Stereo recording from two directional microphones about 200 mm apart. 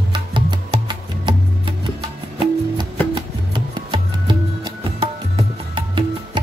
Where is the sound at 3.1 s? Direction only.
25° right (ahead or behind).